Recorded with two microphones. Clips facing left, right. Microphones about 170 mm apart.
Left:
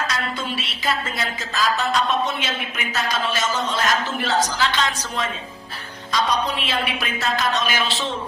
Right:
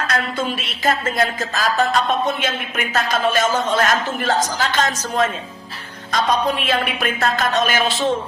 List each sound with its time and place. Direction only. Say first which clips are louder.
0.1 s a woman's voice: right 5 dB; 50° right (ahead or behind)